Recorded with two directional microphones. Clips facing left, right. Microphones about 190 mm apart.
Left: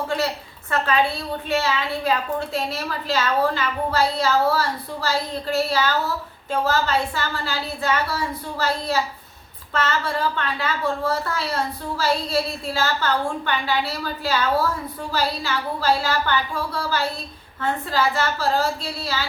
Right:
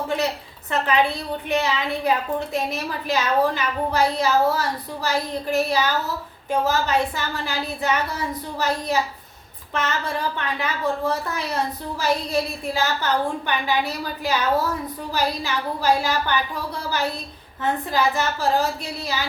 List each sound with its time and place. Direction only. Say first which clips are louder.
0.7 s a woman's voice: even; 20° right (ahead or behind)